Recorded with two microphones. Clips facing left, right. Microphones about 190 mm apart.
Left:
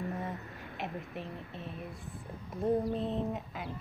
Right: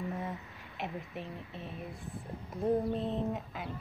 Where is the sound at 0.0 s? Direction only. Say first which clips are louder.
Even; centre (ahead or behind).